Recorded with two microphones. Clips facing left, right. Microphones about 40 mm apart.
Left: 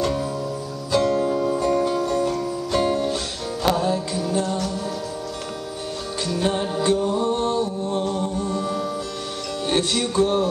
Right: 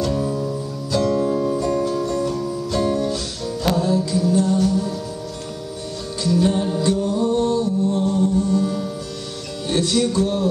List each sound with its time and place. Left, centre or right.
0.0 s music: centre
6.2 s music: left